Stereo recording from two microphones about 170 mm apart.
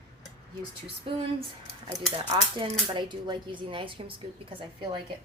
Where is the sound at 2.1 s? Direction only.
30° right (ahead or behind).